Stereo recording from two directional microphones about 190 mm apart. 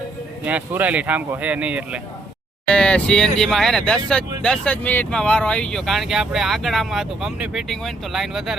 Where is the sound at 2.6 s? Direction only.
5° left (ahead or behind).